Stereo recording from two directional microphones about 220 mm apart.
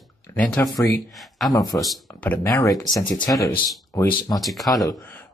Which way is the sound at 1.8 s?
5° left (ahead or behind).